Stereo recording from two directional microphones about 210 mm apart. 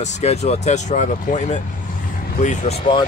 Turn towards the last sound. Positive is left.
turn(degrees=25)  # may be behind; listen again after turning